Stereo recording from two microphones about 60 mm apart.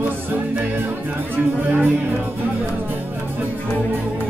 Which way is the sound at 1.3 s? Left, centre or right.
Right.